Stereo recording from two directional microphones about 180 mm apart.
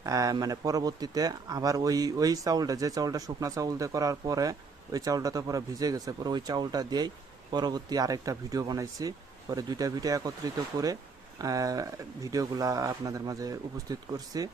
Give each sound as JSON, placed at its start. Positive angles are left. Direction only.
{"t": 0.0, "sound": "speech", "side_deg": -20}